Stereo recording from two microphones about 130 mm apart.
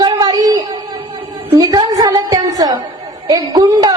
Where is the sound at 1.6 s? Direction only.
30° right (ahead or behind).